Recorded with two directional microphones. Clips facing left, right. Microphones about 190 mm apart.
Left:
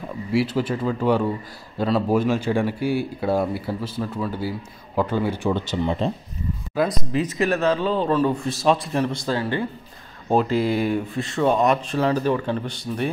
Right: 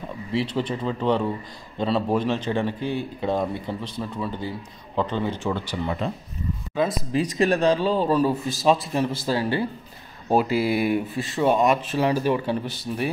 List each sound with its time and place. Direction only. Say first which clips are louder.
0.3 s speech: left 3 dB; 5° left (ahead or behind); by 6.1 s 25° left (ahead or behind)
6.7 s speech: left 1 dB; centre (ahead or behind)
7.2 s speech: right 1 dB; 30° right (ahead or behind)
7.5 s a man's voice: even; 15° right (ahead or behind)